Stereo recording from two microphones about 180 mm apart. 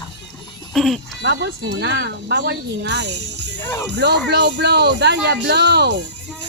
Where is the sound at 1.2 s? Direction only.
75° right (ahead or behind).